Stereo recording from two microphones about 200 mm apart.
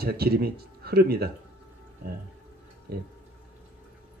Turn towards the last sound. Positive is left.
turn(degrees=-50)  # may be behind; listen again after turning